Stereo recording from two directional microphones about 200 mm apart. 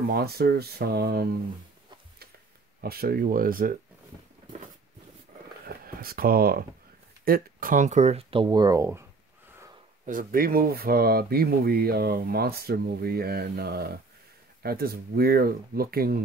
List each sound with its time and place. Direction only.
0.1 s speech: 50° right (ahead or behind)
2.8 s speech: 50° right (ahead or behind)
5.7 s speech: 50° right (ahead or behind); by 9.0 s 15° right (ahead or behind)
10.0 s speech: 45° right (ahead or behind)